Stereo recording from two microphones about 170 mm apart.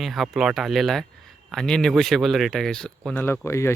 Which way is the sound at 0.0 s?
Centre (ahead or behind).